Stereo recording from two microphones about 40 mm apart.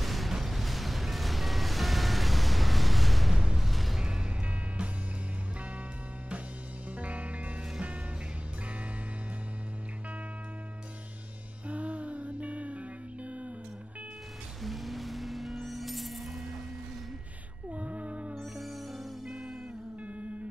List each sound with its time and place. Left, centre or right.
0.0 s a sound: centre
0.3 s music: centre
4.0 s music: centre
7.0 s music: right
11.6 s music: right
14.6 s music: centre
17.6 s music: right
18.3 s music: centre